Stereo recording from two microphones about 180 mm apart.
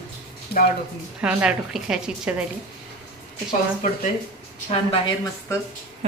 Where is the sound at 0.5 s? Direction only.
60° left (ahead or behind).